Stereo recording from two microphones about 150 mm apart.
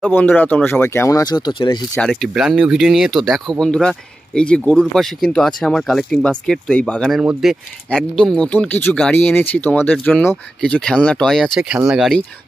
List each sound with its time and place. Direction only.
0.1 s speech: 10° left (ahead or behind); by 1.8 s 30° left (ahead or behind)
2.0 s speech: centre (ahead or behind)
7.2 s speech: 5° right (ahead or behind)
7.9 s speech: 5° left (ahead or behind)